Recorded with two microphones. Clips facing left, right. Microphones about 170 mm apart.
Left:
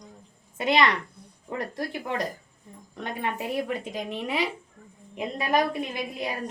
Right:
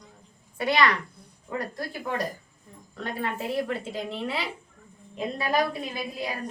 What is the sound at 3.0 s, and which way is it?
A woman's voice, 20° left (ahead or behind).